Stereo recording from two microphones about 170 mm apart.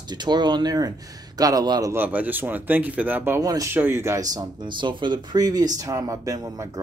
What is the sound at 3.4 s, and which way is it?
Speech, 20° right (ahead or behind).